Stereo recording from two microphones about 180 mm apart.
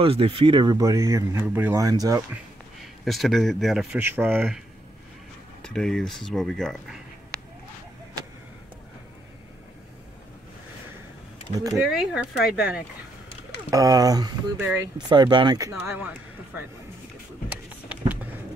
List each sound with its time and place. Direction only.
0.0 s speech: 30° right (ahead or behind)
2.8 s a man's voice: centre (ahead or behind)
4.0 s speech: 10° right (ahead or behind)
5.6 s speech: 5° left (ahead or behind)
11.9 s speech: 5° right (ahead or behind)
13.7 s speech: 20° right (ahead or behind)
14.7 s speech: 10° right (ahead or behind)
15.0 s speech: 25° right (ahead or behind)
17.5 s vehicle: 10° right (ahead or behind)